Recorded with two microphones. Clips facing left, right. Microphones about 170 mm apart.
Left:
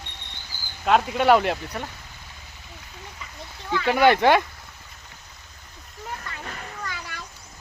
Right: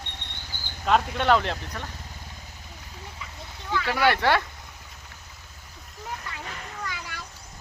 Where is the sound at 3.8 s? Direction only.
20° left (ahead or behind).